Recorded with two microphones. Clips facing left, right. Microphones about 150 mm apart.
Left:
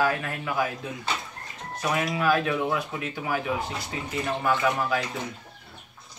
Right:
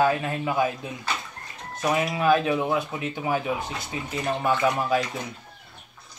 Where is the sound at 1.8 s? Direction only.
25° right (ahead or behind).